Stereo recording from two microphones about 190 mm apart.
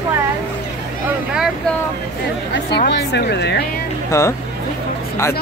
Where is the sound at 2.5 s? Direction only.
60° left (ahead or behind).